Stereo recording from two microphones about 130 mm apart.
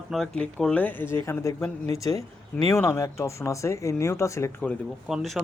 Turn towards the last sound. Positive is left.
turn(degrees=-5)  # may be behind; listen again after turning